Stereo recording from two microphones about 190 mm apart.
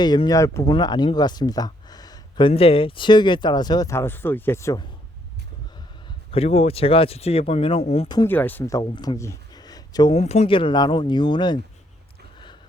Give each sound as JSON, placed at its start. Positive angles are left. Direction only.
{"t": 0.0, "sound": "speech", "side_deg": 20}
{"t": 6.3, "sound": "speech", "side_deg": 30}
{"t": 8.3, "sound": "speech", "side_deg": 10}
{"t": 10.1, "sound": "speech", "side_deg": 35}